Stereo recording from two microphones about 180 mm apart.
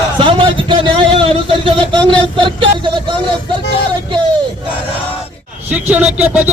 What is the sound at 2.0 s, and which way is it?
Speech, 30° right (ahead or behind).